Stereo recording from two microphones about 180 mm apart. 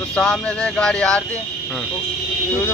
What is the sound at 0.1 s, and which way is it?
A man's voice, 5° left (ahead or behind).